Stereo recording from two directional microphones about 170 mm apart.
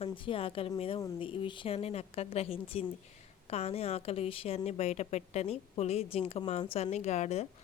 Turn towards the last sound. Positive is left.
turn(degrees=40)  # may be behind; listen again after turning